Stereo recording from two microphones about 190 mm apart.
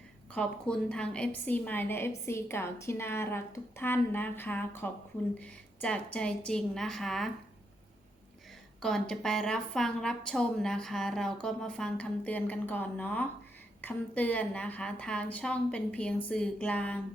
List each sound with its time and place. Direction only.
0.3 s a woman's voice: 5° left (ahead or behind)
8.8 s a woman's voice: 5° left (ahead or behind)